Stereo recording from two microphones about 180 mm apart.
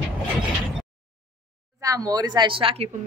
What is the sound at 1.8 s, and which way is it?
Speech, 20° right (ahead or behind).